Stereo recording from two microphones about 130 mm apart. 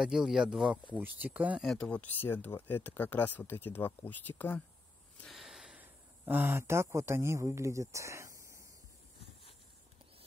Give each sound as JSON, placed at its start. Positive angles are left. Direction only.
{"t": 0.0, "sound": "speech", "side_deg": -5}
{"t": 1.6, "sound": "speech", "side_deg": 0}
{"t": 1.9, "sound": "speech", "side_deg": 15}
{"t": 5.2, "sound": "speech", "side_deg": 0}